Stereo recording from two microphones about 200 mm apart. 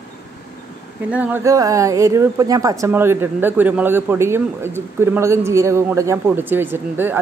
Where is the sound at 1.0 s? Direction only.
5° right (ahead or behind).